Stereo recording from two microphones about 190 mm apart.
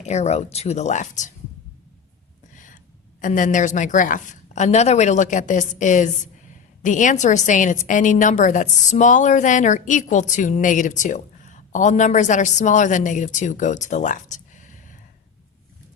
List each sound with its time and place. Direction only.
0.0 s a woman's voice: 35° left (ahead or behind)
2.6 s a woman's voice: 45° left (ahead or behind)